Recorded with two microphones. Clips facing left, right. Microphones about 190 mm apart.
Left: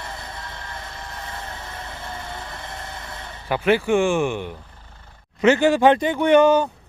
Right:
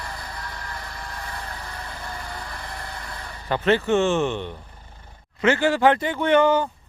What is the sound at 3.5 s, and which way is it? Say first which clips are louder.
Speech: left 1 dB; 10° left (ahead or behind).